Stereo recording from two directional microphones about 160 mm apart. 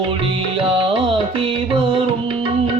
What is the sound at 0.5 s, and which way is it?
Music, 30° right (ahead or behind).